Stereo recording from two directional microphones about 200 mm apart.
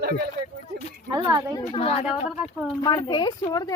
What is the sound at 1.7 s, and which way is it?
A woman's voice, 30° left (ahead or behind).